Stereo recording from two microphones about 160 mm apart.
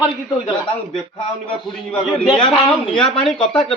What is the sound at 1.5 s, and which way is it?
Speech, 5° left (ahead or behind).